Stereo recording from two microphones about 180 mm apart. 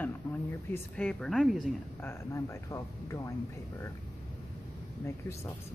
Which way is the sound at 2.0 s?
15° left (ahead or behind).